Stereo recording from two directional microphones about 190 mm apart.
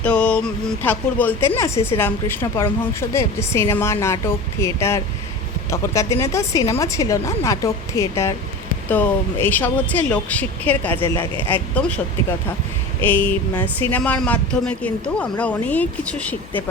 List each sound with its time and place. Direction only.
0.0 s a woman's voice: 5° left (ahead or behind)
13.0 s a woman's voice: 10° left (ahead or behind)